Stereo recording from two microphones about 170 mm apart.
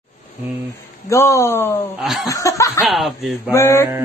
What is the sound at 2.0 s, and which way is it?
Speech, centre (ahead or behind).